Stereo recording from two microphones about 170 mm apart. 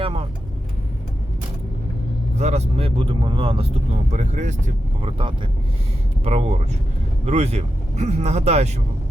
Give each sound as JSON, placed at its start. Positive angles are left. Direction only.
{"t": 0.0, "sound": "speech", "side_deg": -35}
{"t": 2.4, "sound": "speech", "side_deg": -40}
{"t": 6.2, "sound": "speech", "side_deg": -40}